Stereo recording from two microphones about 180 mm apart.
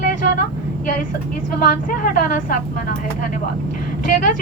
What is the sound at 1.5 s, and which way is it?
A woman's voice, 50° left (ahead or behind).